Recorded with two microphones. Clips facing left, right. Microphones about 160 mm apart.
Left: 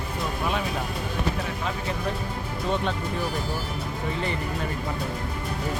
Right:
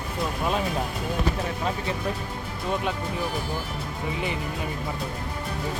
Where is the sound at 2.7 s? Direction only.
5° right (ahead or behind).